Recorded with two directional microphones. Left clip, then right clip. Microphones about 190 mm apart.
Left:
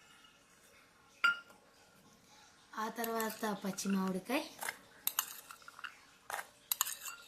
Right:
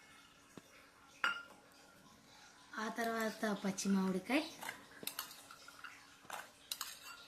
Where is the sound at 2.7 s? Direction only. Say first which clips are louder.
Left 1 dB; 45° left (ahead or behind).